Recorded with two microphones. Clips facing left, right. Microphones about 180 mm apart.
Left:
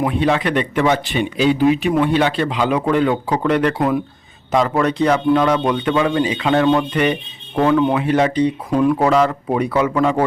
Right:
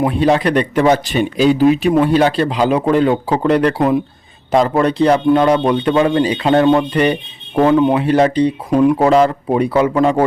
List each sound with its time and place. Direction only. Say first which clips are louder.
0.1 s speech: right 4 dB; 35° right (ahead or behind)
7.6 s speech: right 3 dB; 25° right (ahead or behind)